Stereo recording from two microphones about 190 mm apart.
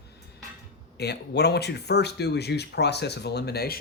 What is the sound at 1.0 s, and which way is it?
Speech, 60° left (ahead or behind).